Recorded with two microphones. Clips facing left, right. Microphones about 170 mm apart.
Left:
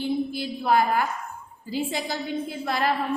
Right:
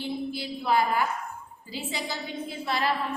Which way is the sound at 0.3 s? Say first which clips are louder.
Left 3 dB; 50° left (ahead or behind).